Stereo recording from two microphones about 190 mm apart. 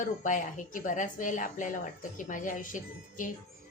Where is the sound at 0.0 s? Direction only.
45° left (ahead or behind).